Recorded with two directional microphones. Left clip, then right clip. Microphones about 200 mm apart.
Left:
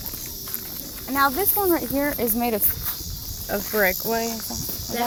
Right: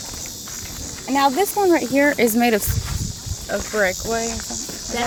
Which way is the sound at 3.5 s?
30° left (ahead or behind).